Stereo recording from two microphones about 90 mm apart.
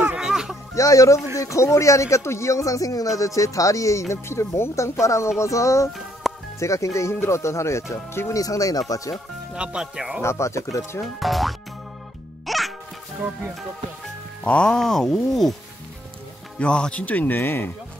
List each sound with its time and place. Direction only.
0.2 s a sound: 5° right (ahead or behind)
0.7 s speech: 40° left (ahead or behind)
6.2 s music: centre (ahead or behind)
6.6 s speech: 35° left (ahead or behind)
8.4 s speech: 40° left (ahead or behind)
9.6 s speech: 10° right (ahead or behind)
10.2 s speech: 30° left (ahead or behind)
11.1 s speech: centre (ahead or behind)
12.4 s music: centre (ahead or behind)
14.4 s speech: 10° left (ahead or behind)
16.5 s speech: 10° left (ahead or behind)